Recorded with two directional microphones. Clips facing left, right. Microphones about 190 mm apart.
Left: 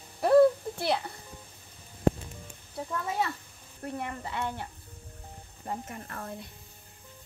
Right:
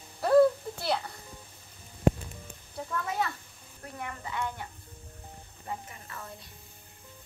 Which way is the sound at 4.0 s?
30° left (ahead or behind).